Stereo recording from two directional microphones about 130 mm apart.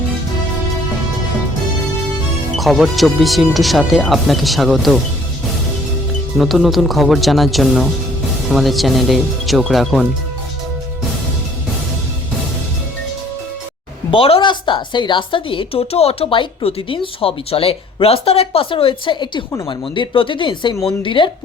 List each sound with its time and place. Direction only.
2.6 s speech: centre (ahead or behind)
6.3 s speech: centre (ahead or behind)
14.1 s a woman's voice: 45° left (ahead or behind)